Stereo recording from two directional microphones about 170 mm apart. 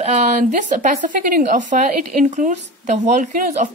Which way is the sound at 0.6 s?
50° right (ahead or behind).